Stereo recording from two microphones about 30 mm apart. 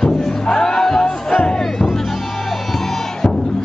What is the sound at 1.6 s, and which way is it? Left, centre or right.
Music, centre.